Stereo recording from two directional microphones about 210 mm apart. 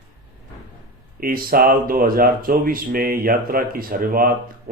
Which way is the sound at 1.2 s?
45° right (ahead or behind).